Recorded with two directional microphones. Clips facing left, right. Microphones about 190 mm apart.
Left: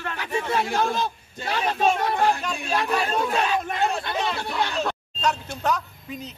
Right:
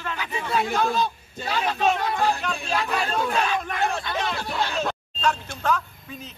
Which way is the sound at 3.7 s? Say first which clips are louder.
Left 1 dB; 25° left (ahead or behind).